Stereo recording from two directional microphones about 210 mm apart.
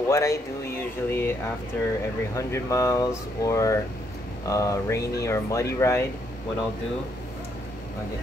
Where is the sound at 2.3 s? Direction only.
15° left (ahead or behind).